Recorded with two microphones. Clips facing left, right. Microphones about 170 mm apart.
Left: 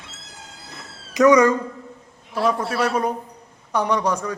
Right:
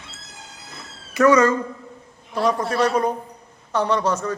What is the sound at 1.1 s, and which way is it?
A man's voice, 15° left (ahead or behind).